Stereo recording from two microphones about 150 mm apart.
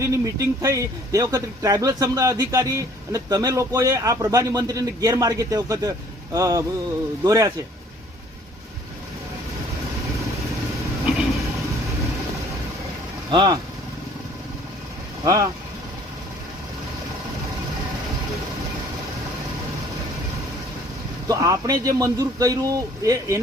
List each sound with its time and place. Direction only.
0.0 s a man's voice: 20° right (ahead or behind)
13.3 s a man's voice: 30° right (ahead or behind)
15.2 s speech: 25° right (ahead or behind)
21.2 s a man's voice: 25° right (ahead or behind)